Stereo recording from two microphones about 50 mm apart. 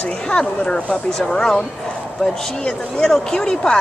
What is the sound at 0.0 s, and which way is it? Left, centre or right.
Speech, left.